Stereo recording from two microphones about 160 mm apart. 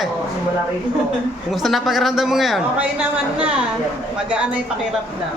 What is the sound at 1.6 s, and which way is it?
Speech, centre (ahead or behind).